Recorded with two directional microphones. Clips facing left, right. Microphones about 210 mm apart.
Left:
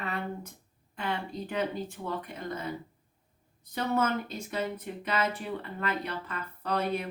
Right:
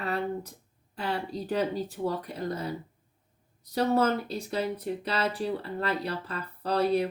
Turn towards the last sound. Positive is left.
turn(degrees=-35)  # may be behind; listen again after turning